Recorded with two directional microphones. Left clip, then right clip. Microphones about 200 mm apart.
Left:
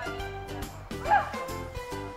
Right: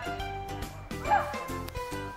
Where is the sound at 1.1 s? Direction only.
50° right (ahead or behind).